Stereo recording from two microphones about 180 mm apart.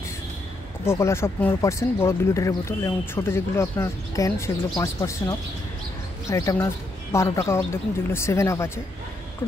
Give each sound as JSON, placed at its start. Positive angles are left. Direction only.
{"t": 0.8, "sound": "speech", "side_deg": 15}